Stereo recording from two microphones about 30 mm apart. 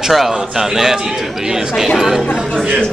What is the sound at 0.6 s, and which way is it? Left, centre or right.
Speech, centre.